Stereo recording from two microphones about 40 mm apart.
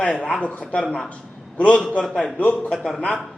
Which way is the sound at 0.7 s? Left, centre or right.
Left.